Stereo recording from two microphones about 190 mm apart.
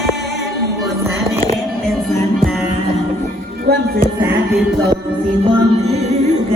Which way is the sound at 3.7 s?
50° right (ahead or behind).